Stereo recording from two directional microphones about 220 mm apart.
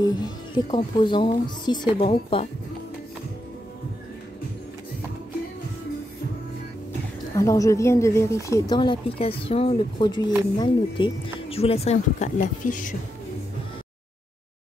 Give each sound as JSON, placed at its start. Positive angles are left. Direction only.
{"t": 0.0, "sound": "speech", "side_deg": 20}
{"t": 7.3, "sound": "speech", "side_deg": 15}